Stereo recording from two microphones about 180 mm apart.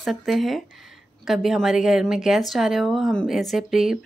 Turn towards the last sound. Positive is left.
turn(degrees=0)  # may be behind; listen again after turning